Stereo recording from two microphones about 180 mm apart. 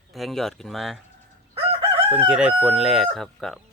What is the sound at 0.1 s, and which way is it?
Speech, centre (ahead or behind).